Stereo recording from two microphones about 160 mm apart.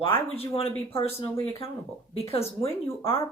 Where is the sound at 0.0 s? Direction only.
35° left (ahead or behind).